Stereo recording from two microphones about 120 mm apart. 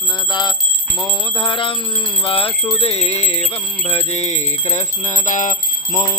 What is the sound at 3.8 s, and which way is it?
Music, 60° left (ahead or behind).